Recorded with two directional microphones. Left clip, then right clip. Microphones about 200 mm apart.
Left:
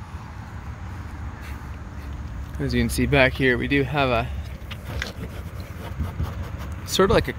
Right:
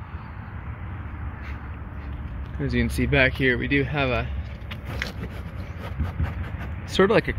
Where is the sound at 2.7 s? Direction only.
20° left (ahead or behind).